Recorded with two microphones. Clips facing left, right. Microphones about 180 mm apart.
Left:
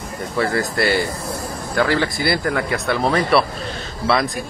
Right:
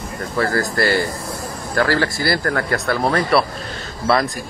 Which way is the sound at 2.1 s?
20° left (ahead or behind).